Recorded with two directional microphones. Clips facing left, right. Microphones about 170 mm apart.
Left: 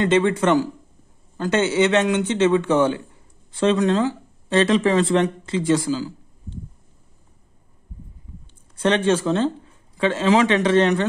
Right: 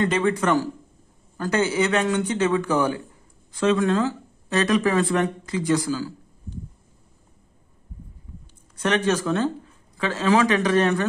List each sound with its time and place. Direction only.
0.0 s speech: 25° left (ahead or behind)
8.7 s speech: 30° left (ahead or behind)